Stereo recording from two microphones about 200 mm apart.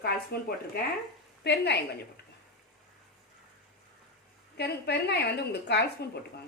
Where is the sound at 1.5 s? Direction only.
55° left (ahead or behind).